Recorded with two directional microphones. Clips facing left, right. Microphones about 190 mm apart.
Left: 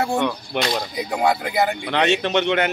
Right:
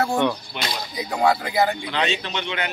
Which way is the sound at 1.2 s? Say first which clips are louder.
Right 1 dB; 5° left (ahead or behind).